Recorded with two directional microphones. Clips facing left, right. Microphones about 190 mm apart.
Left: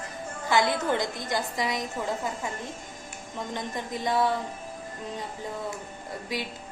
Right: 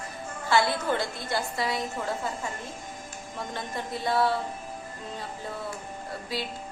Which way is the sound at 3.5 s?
15° left (ahead or behind).